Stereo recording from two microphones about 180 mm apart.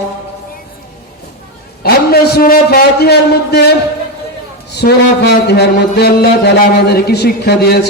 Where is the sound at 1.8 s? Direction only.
60° left (ahead or behind).